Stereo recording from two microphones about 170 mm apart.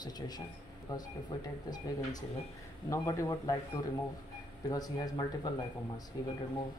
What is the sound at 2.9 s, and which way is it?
Speech, 20° left (ahead or behind).